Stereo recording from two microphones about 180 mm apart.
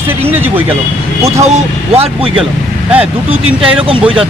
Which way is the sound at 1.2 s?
35° right (ahead or behind).